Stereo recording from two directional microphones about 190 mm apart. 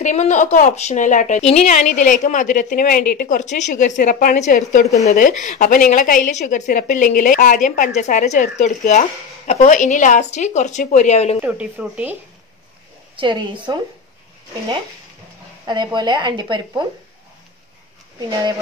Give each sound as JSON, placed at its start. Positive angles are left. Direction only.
{"t": 0.0, "sound": "a woman's voice", "side_deg": 40}
{"t": 11.4, "sound": "speech", "side_deg": -5}
{"t": 13.1, "sound": "a woman's voice", "side_deg": -25}
{"t": 15.6, "sound": "a woman's voice", "side_deg": -25}